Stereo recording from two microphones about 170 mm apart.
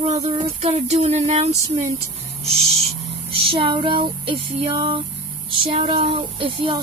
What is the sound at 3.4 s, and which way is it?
Speech, 30° right (ahead or behind).